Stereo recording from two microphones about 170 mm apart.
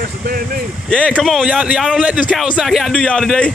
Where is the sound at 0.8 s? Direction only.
5° left (ahead or behind).